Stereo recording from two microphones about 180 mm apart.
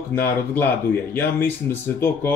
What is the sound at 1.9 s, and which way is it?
Speech, 15° left (ahead or behind).